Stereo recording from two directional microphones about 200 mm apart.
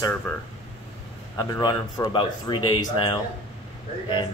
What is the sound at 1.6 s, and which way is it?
Speech, 20° left (ahead or behind).